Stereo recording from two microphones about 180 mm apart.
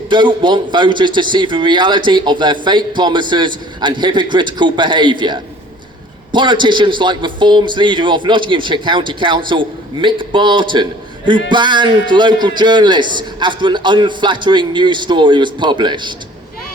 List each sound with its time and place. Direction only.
0.1 s a man's voice: 25° right (ahead or behind)